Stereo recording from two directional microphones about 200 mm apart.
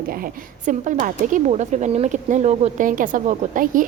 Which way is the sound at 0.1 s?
45° right (ahead or behind).